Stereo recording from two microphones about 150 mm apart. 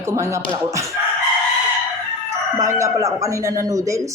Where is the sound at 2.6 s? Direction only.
20° right (ahead or behind).